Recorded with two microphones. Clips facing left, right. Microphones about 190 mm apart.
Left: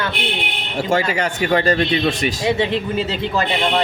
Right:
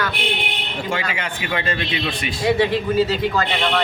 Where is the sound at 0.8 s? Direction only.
45° left (ahead or behind).